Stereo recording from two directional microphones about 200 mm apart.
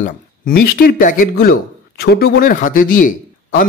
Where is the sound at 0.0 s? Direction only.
45° left (ahead or behind).